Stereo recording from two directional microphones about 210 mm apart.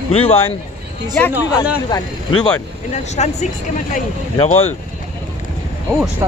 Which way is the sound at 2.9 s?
35° left (ahead or behind).